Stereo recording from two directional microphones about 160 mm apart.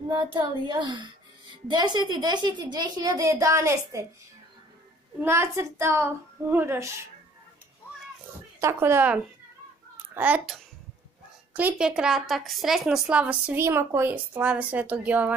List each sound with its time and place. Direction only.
0.1 s a woman's voice: 30° right (ahead or behind)
5.2 s a woman's voice: 15° right (ahead or behind)
8.5 s a woman's voice: 15° right (ahead or behind)